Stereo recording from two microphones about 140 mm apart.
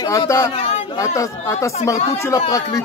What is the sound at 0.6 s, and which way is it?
Speech, 50° left (ahead or behind).